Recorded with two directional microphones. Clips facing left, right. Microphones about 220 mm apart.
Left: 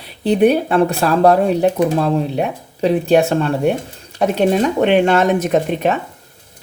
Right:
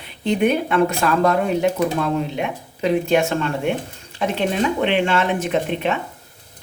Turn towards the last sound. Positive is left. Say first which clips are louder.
# left 5 dB
turn(degrees=40)  # may be behind; listen again after turning